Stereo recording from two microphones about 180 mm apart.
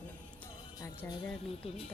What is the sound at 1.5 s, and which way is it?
Speech, 35° left (ahead or behind).